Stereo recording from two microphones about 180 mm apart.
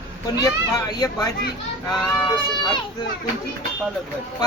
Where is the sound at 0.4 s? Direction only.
20° left (ahead or behind).